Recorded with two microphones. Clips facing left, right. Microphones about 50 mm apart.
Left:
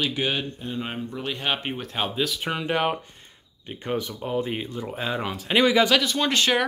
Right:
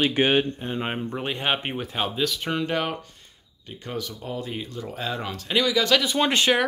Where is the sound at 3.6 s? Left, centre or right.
Left.